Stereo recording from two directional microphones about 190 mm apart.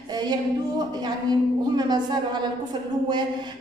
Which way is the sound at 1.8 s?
25° right (ahead or behind).